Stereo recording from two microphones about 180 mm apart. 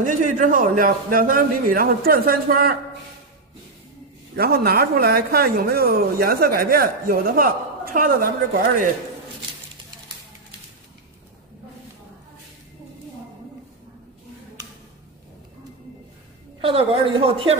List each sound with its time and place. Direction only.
0.0 s a man's voice: 45° right (ahead or behind)
4.4 s speech: 60° right (ahead or behind)
16.6 s speech: 30° right (ahead or behind)